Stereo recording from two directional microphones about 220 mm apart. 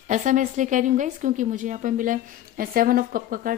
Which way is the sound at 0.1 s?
35° right (ahead or behind).